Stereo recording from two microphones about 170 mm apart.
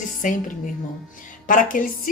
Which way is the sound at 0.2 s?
50° left (ahead or behind).